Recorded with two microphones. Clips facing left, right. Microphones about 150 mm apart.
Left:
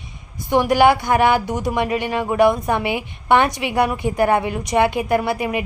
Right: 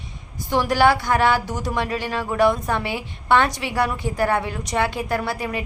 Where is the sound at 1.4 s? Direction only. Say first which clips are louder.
Left 5 dB; 55° left (ahead or behind).